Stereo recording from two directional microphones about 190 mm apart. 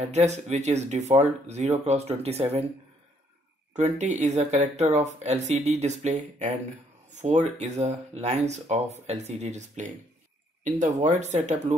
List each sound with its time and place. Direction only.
0.0 s speech: 35° right (ahead or behind)
3.7 s speech: 35° right (ahead or behind)